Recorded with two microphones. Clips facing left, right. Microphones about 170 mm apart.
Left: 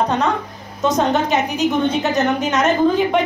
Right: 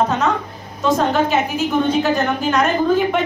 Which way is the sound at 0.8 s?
20° left (ahead or behind).